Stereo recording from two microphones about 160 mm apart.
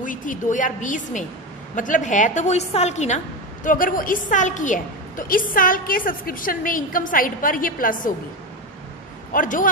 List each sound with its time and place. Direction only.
0.0 s a woman's voice: 55° left (ahead or behind)
3.6 s a woman's voice: 60° left (ahead or behind)
9.3 s a woman's voice: 55° left (ahead or behind)